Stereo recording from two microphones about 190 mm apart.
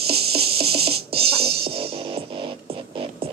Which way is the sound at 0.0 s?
30° right (ahead or behind).